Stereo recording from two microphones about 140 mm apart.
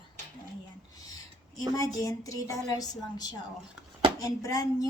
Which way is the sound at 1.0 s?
25° left (ahead or behind).